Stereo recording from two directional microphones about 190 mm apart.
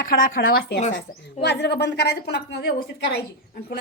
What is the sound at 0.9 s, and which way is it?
A woman's voice, 60° left (ahead or behind).